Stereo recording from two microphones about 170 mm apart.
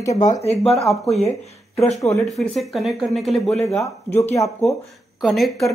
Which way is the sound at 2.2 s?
Centre (ahead or behind).